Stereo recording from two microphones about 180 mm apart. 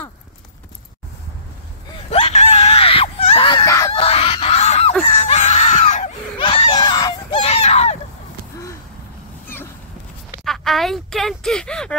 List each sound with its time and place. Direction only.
2.0 s screaming: 35° left (ahead or behind); by 3.9 s 20° left (ahead or behind)
3.9 s goose: 35° left (ahead or behind)
5.0 s screaming: 35° left (ahead or behind)
6.3 s screaming: 30° left (ahead or behind)
7.4 s a sound: 35° left (ahead or behind)
10.4 s a sound: centre (ahead or behind)